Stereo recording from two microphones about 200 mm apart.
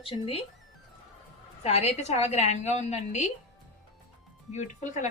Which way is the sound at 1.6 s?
30° left (ahead or behind).